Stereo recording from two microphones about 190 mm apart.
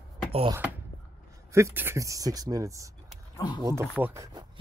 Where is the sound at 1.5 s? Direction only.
10° right (ahead or behind).